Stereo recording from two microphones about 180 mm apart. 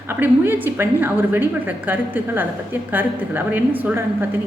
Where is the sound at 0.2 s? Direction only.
10° right (ahead or behind).